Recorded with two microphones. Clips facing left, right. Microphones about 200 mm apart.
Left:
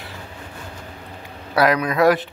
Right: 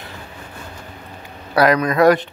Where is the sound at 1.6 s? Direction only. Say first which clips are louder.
Right 3 dB; 5° left (ahead or behind).